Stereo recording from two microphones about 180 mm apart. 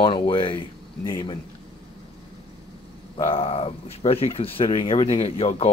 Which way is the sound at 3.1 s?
30° left (ahead or behind).